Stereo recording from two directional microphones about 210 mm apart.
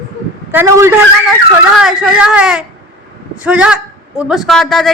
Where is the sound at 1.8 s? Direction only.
5° right (ahead or behind).